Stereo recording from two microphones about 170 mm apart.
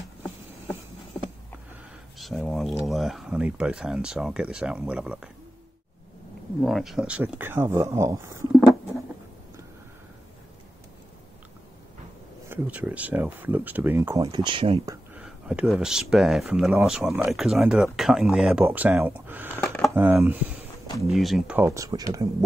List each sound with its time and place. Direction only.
2.1 s speech: centre (ahead or behind)
6.6 s speech: centre (ahead or behind); by 8.5 s 20° right (ahead or behind)
12.4 s speech: 10° right (ahead or behind); by 14.8 s 30° right (ahead or behind)
15.1 s speech: 5° right (ahead or behind)
19.6 s a sound: 5° left (ahead or behind)
19.9 s speech: 15° right (ahead or behind)
21.1 s speech: centre (ahead or behind)
21.5 s speech: 15° right (ahead or behind)